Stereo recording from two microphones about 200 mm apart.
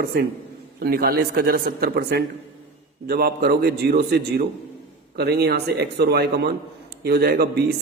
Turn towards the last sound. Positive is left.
turn(degrees=-50)  # may be behind; listen again after turning